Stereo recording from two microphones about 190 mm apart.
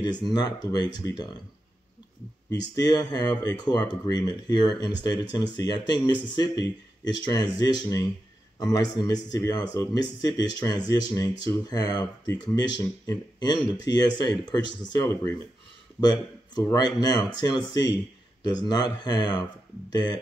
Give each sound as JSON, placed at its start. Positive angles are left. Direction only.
{"t": 0.0, "sound": "speech", "side_deg": 25}
{"t": 2.7, "sound": "speech", "side_deg": 20}